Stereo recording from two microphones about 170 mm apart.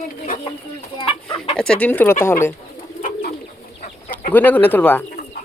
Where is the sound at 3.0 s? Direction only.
55° left (ahead or behind).